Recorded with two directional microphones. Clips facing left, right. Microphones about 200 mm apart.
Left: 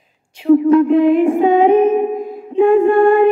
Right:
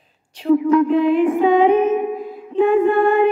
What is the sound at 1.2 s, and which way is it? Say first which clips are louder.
Music: left 2 dB; 30° left (ahead or behind).